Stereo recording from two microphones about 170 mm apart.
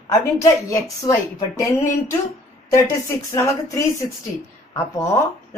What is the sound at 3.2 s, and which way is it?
A woman's voice, 20° left (ahead or behind).